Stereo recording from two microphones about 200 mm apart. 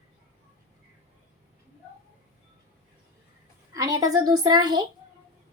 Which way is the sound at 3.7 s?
15° right (ahead or behind).